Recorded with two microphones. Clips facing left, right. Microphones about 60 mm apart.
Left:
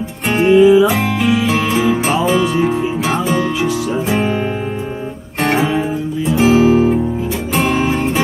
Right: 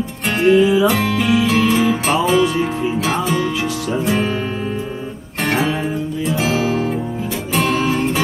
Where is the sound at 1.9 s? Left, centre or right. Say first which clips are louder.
Left 2 dB; centre.